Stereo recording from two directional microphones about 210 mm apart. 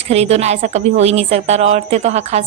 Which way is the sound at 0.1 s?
30° right (ahead or behind).